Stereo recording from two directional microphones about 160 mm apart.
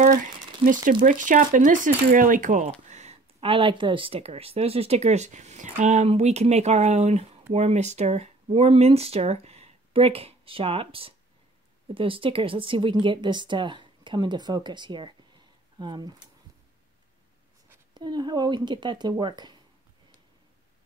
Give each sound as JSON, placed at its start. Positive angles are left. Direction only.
{"t": 1.0, "sound": "speech", "side_deg": -55}
{"t": 17.9, "sound": "speech", "side_deg": -25}